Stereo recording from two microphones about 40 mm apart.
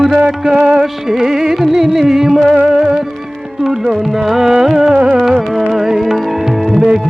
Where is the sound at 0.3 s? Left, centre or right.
Centre.